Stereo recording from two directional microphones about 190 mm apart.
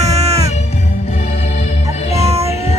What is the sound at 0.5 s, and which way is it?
Music, 35° left (ahead or behind).